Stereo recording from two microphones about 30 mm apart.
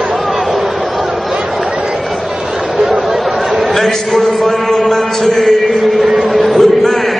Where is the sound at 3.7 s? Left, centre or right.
Centre.